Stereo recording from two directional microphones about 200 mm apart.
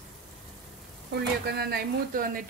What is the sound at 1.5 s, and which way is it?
Speech, 50° right (ahead or behind).